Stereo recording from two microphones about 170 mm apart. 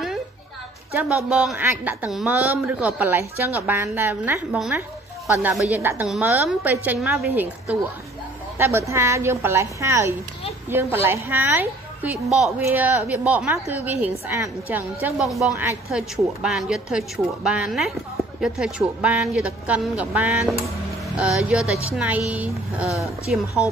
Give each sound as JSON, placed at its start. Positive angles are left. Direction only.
{"t": 0.9, "sound": "speech", "side_deg": -5}